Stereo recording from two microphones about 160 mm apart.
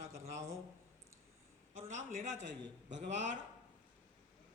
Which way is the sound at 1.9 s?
50° right (ahead or behind).